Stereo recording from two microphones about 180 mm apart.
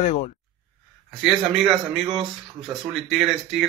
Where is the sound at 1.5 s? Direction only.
Centre (ahead or behind).